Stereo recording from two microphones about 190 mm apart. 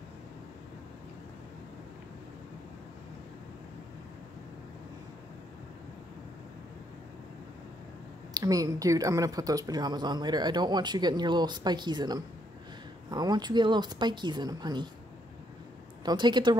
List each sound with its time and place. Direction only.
8.3 s speech: 20° right (ahead or behind)
16.1 s speech: 25° right (ahead or behind)